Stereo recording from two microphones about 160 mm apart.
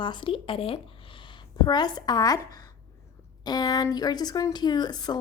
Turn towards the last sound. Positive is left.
turn(degrees=25)  # may be behind; listen again after turning